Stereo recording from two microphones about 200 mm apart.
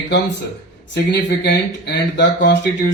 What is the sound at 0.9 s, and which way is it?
Speech, 55° left (ahead or behind).